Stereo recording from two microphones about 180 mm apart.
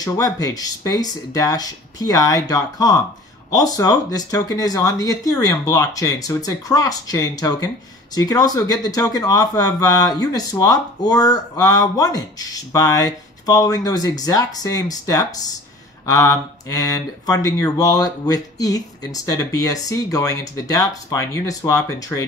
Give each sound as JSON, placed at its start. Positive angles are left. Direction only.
{"t": 0.0, "sound": "speech", "side_deg": 20}